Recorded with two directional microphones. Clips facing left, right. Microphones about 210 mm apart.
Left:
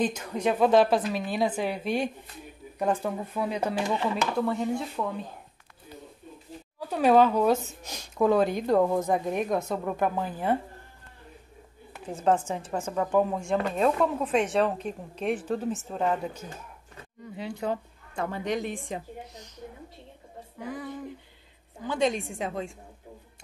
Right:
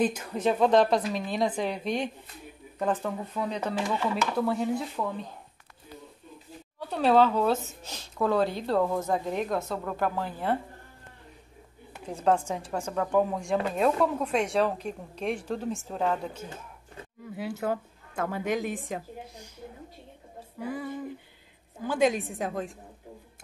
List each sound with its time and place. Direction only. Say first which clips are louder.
0.4 s speech: left 1 dB; 5° left (ahead or behind)
4.4 s speech: right 1 dB; 5° right (ahead or behind)
6.8 s speech: left 2 dB; 10° left (ahead or behind)
12.1 s speech: even; 5° left (ahead or behind)
17.2 s speech: right 1 dB; 5° right (ahead or behind)
20.5 s a sound: right 2 dB; 5° right (ahead or behind)
21.8 s speech: right 2 dB; 5° right (ahead or behind)